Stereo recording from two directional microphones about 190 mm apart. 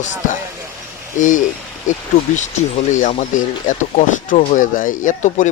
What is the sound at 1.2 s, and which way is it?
Speech, 40° left (ahead or behind).